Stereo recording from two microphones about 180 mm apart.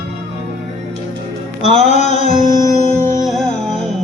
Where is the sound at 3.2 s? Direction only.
Centre (ahead or behind).